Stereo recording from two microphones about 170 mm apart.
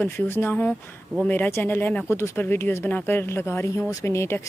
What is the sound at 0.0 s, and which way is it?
Speech, 10° left (ahead or behind).